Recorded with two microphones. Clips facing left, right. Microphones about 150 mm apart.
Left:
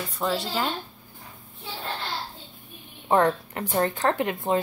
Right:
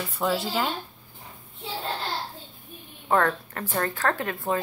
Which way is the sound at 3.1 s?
20° left (ahead or behind).